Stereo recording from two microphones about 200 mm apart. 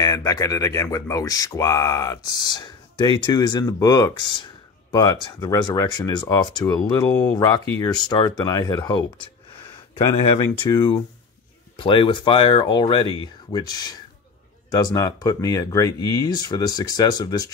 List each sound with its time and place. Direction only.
0.0 s speech: 20° left (ahead or behind)
10.3 s speech: 25° left (ahead or behind)